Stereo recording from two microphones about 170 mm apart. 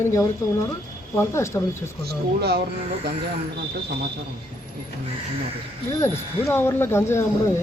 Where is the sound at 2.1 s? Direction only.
70° right (ahead or behind).